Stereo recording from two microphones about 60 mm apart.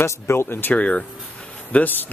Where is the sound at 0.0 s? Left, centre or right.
Left.